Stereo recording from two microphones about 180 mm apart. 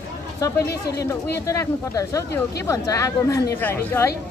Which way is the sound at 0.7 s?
65° left (ahead or behind).